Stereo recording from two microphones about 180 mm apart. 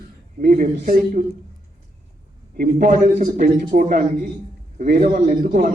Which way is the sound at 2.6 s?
45° right (ahead or behind).